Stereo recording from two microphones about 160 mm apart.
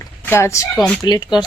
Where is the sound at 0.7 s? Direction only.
5° left (ahead or behind).